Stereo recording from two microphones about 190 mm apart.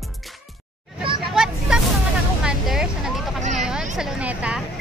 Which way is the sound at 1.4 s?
5° right (ahead or behind).